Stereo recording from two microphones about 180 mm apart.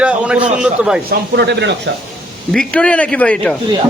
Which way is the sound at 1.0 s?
70° right (ahead or behind).